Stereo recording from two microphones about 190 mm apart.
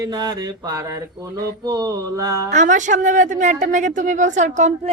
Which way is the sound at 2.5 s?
40° right (ahead or behind).